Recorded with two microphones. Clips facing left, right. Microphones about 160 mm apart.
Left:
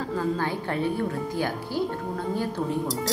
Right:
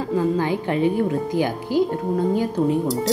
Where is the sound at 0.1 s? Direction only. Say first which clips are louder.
Right 7 dB; 15° right (ahead or behind).